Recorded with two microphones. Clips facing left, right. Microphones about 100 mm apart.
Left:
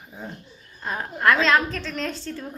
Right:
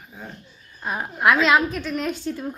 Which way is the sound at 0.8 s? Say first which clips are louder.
Right 2 dB; 5° right (ahead or behind).